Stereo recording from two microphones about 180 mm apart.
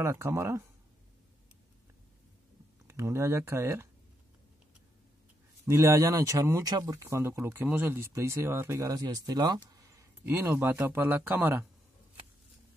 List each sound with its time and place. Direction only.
0.0 s speech: 15° right (ahead or behind)
2.9 s speech: 15° right (ahead or behind)
5.7 s speech: 15° right (ahead or behind)